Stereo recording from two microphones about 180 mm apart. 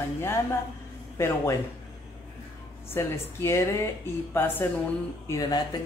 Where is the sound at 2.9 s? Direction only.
15° left (ahead or behind).